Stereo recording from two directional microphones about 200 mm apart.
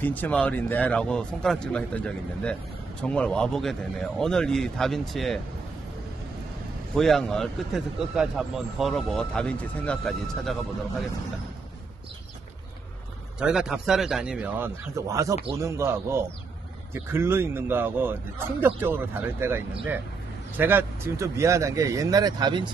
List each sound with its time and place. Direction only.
0.0 s a man's voice: 10° left (ahead or behind)
7.0 s a man's voice: centre (ahead or behind)
13.4 s a man's voice: 5° right (ahead or behind); by 22.7 s 20° right (ahead or behind)